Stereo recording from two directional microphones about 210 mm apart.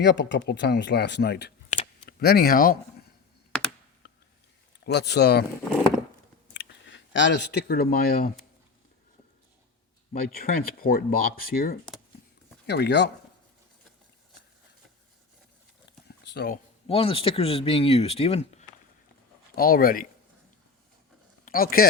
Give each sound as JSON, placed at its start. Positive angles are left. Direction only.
{"t": 0.0, "sound": "speech", "side_deg": 60}
{"t": 4.0, "sound": "a sound", "side_deg": 50}
{"t": 4.8, "sound": "speech", "side_deg": 50}
{"t": 6.5, "sound": "speech", "side_deg": 60}
{"t": 10.1, "sound": "speech", "side_deg": 45}
{"t": 15.9, "sound": "a sound", "side_deg": 55}
{"t": 16.8, "sound": "speech", "side_deg": 25}
{"t": 19.5, "sound": "speech", "side_deg": 45}
{"t": 21.4, "sound": "speech", "side_deg": 45}